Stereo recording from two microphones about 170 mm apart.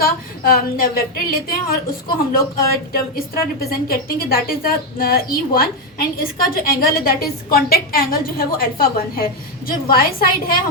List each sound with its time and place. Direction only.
0.0 s a woman's voice: 60° left (ahead or behind)